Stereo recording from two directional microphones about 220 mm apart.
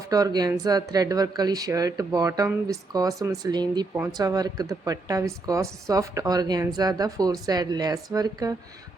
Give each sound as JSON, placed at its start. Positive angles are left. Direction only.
{"t": 0.1, "sound": "speech", "side_deg": -15}